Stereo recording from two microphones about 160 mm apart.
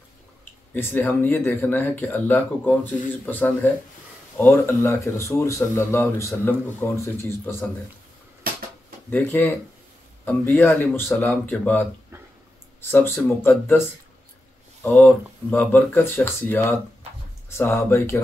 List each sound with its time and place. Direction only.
0.7 s speech: 10° left (ahead or behind)
9.1 s speech: 10° left (ahead or behind)
12.9 s speech: 15° left (ahead or behind)